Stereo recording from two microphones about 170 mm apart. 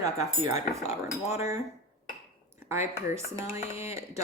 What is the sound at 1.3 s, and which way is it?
Speech, 15° right (ahead or behind).